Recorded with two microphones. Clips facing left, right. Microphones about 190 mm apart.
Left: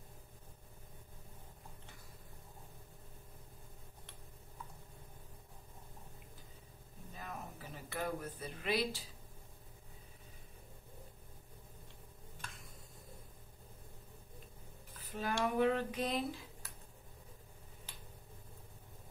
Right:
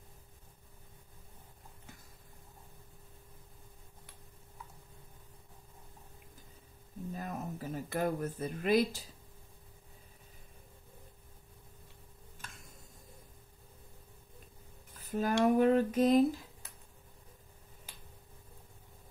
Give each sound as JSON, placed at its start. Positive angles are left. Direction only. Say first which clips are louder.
{"t": 7.2, "sound": "speech", "louder": "right 6 dB", "side_deg": -45}
{"t": 15.0, "sound": "music", "louder": "right 7 dB", "side_deg": -45}
{"t": 15.4, "sound": "a sound", "louder": "right 7 dB", "side_deg": -40}